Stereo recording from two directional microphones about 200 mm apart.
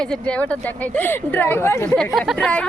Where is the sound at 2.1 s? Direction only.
Centre (ahead or behind).